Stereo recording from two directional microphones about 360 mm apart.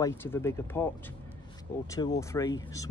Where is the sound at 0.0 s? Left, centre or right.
Centre.